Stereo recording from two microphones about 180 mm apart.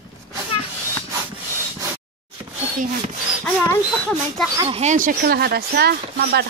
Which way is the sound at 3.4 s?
5° left (ahead or behind).